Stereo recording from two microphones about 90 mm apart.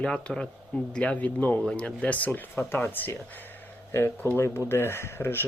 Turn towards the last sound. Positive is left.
turn(degrees=25)  # may be behind; listen again after turning